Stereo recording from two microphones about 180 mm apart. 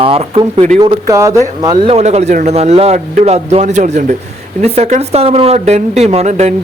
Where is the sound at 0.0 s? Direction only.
35° right (ahead or behind).